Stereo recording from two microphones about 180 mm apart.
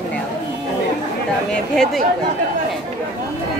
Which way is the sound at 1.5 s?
5° left (ahead or behind).